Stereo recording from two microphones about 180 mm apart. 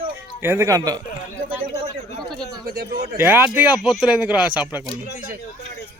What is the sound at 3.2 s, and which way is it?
Speech, 10° right (ahead or behind).